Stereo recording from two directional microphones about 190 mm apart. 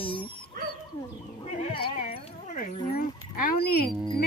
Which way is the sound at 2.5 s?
45° left (ahead or behind).